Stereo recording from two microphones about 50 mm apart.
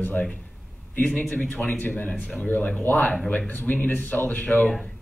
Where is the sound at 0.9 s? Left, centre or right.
Left.